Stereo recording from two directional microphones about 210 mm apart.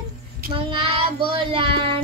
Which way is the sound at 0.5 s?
25° right (ahead or behind).